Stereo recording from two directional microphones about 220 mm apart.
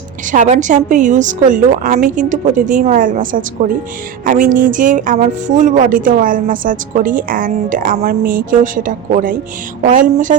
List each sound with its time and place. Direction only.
0.3 s speech: 30° right (ahead or behind)